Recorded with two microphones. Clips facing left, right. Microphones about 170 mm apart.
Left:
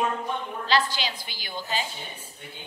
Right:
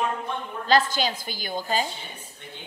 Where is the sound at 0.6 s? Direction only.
45° right (ahead or behind).